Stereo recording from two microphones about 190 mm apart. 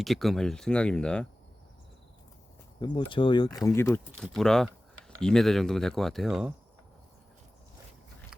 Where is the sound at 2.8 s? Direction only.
25° left (ahead or behind).